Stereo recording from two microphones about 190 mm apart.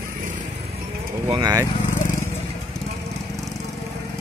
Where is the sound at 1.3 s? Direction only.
20° right (ahead or behind).